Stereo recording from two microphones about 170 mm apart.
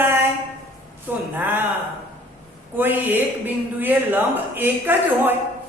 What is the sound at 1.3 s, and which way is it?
Speech, 10° right (ahead or behind).